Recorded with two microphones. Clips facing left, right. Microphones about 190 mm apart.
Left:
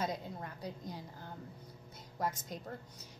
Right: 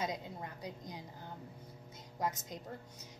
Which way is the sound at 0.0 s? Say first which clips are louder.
Left 1 dB; 20° right (ahead or behind).